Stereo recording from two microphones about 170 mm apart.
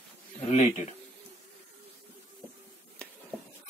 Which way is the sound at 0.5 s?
40° left (ahead or behind).